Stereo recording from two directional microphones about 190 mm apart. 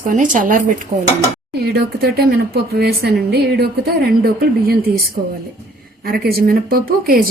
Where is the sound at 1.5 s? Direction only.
55° right (ahead or behind).